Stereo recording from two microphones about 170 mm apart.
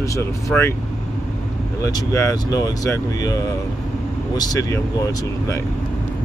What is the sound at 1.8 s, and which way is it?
Speech, 20° left (ahead or behind).